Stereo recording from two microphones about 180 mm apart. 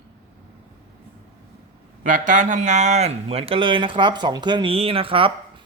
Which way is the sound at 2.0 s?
45° right (ahead or behind).